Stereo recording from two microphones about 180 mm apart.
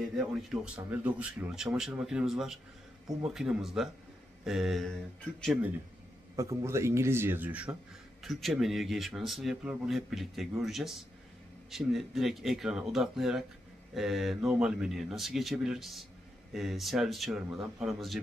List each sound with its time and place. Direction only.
0.3 s speech: centre (ahead or behind)
6.3 s speech: 15° right (ahead or behind); by 18.2 s centre (ahead or behind)